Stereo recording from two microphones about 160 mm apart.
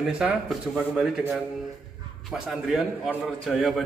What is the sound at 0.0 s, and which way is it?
A man's voice, 5° right (ahead or behind).